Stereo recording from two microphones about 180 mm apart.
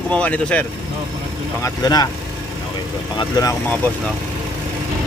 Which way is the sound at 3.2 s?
20° left (ahead or behind).